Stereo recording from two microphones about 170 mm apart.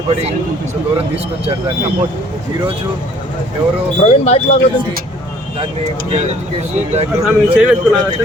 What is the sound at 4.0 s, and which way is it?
Speech, 40° left (ahead or behind).